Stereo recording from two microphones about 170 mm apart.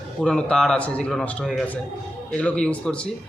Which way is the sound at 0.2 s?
5° left (ahead or behind).